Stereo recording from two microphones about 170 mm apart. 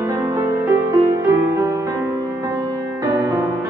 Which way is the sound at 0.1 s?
20° right (ahead or behind).